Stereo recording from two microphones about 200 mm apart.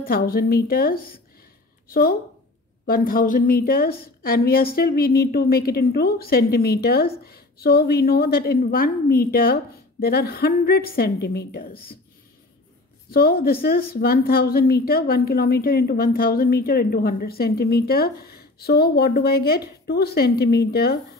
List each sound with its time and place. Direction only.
0.0 s a woman's voice: 50° left (ahead or behind)
13.1 s a woman's voice: 50° left (ahead or behind)